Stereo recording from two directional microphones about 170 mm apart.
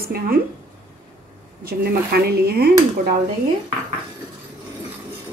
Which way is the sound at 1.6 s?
65° right (ahead or behind).